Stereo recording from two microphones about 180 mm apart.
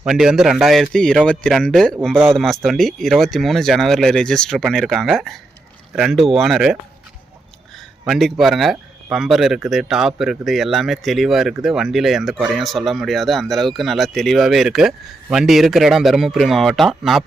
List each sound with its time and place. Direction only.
0.0 s speech: 5° right (ahead or behind)
8.0 s speech: centre (ahead or behind)